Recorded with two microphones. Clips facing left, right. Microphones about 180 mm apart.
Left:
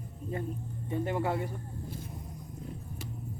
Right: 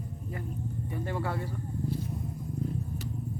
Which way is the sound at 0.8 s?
20° left (ahead or behind).